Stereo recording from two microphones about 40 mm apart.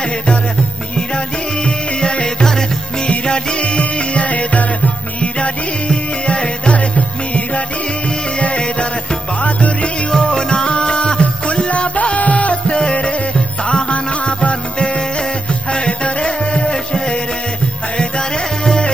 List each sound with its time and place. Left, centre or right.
1.1 s music: left
10.1 s music: centre
16.7 s music: centre